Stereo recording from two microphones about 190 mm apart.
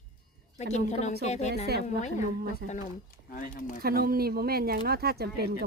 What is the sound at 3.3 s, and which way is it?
Speech, 45° left (ahead or behind).